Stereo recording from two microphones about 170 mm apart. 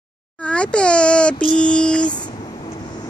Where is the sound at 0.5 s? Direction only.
5° left (ahead or behind).